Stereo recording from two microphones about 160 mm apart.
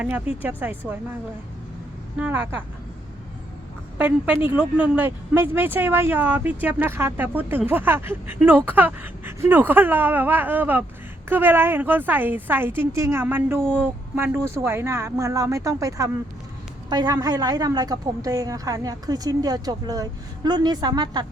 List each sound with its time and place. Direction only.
0.0 s speech: 10° right (ahead or behind)
2.1 s speech: 10° right (ahead or behind)
3.9 s a woman's voice: 10° right (ahead or behind); by 21.2 s 25° right (ahead or behind)